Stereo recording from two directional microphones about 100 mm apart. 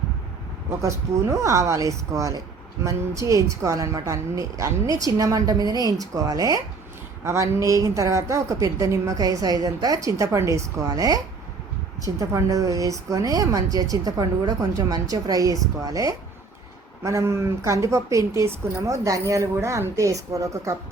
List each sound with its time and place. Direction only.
0.8 s a woman's voice: 30° right (ahead or behind)